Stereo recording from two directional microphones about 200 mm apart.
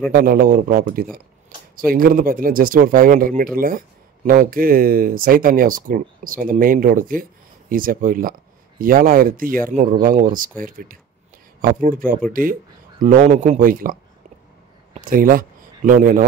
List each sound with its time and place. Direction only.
0.1 s speech: 45° right (ahead or behind)
15.0 s speech: 45° right (ahead or behind)